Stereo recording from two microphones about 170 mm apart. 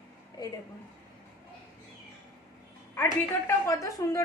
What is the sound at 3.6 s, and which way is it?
Speech, 20° left (ahead or behind).